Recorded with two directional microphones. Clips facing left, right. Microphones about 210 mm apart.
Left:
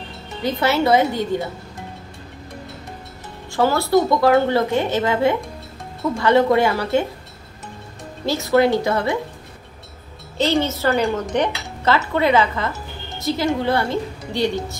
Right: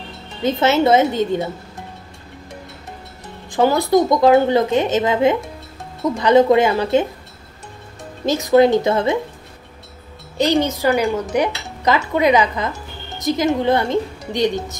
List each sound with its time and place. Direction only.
0.4 s a woman's voice: 20° right (ahead or behind)
3.5 s a woman's voice: 15° right (ahead or behind)
8.3 s a woman's voice: 20° right (ahead or behind)
10.3 s a woman's voice: 15° right (ahead or behind)